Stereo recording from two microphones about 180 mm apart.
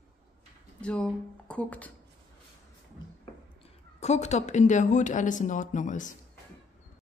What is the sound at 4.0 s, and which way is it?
Speech, 40° left (ahead or behind).